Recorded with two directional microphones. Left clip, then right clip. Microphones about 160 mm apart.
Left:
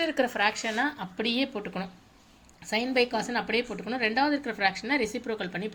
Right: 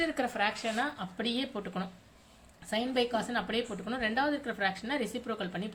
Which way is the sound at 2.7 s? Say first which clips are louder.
Left 4 dB; 20° left (ahead or behind).